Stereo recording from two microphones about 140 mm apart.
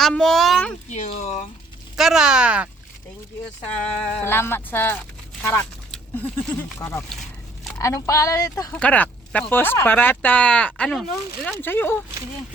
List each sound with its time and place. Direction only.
0.0 s speech: 5° left (ahead or behind)
0.9 s speech: 60° left (ahead or behind)
2.0 s speech: 5° right (ahead or behind)
3.6 s speech: 15° left (ahead or behind)
8.7 s speech: 10° left (ahead or behind)